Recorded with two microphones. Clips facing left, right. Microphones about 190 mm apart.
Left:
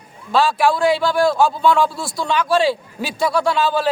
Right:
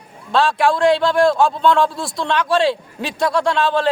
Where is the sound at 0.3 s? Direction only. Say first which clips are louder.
Even; centre (ahead or behind).